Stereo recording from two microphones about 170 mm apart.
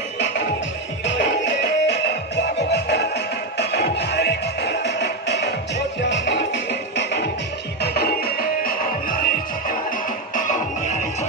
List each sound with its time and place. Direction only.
1.0 s music: 90° left
7.8 s music: 65° left (ahead or behind); by 11.2 s 45° left (ahead or behind)